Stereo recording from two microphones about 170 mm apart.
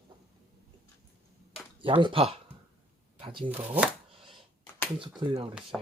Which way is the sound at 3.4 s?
10° right (ahead or behind).